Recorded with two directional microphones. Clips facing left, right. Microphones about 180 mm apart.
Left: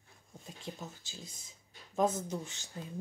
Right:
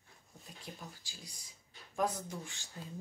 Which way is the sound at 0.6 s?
25° left (ahead or behind).